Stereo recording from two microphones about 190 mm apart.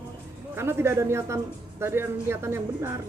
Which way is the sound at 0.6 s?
15° right (ahead or behind).